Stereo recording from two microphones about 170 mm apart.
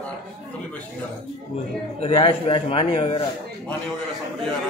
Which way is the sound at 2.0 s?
30° left (ahead or behind).